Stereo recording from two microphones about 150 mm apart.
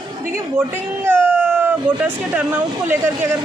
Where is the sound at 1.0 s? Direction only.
15° right (ahead or behind).